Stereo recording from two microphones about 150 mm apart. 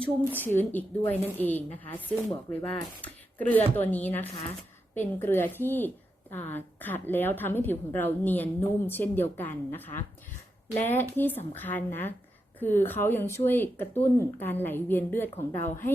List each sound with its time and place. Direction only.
0.0 s a woman's voice: 10° left (ahead or behind)